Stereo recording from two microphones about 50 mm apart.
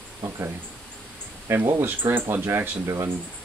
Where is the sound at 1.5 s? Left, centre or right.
Right.